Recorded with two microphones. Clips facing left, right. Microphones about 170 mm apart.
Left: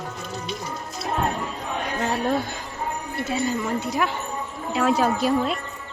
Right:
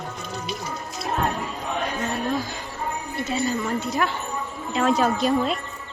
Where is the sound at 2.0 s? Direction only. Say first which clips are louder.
Left 5 dB; 70° left (ahead or behind).